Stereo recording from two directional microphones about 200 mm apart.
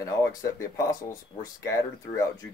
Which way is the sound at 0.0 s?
15° left (ahead or behind).